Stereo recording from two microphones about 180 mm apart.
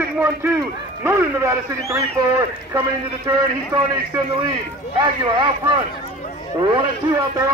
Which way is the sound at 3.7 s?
25° right (ahead or behind).